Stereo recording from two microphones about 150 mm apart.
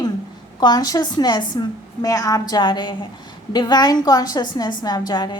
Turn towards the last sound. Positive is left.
turn(degrees=30)  # may be behind; listen again after turning